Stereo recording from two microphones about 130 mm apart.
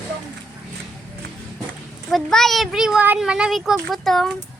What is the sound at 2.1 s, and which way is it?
Speech, 5° left (ahead or behind).